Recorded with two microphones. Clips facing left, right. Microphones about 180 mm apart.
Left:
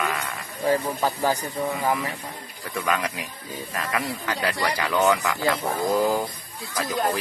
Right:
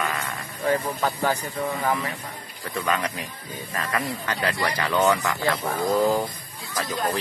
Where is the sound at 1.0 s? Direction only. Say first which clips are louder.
Left 1 dB; 15° left (ahead or behind).